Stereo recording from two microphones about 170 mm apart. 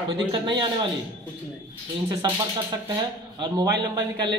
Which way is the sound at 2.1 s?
25° right (ahead or behind).